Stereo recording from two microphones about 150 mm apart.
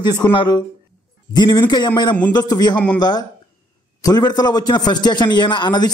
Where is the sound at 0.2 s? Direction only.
30° left (ahead or behind).